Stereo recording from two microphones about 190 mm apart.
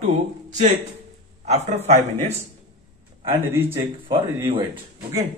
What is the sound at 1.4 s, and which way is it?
Speech, 35° right (ahead or behind).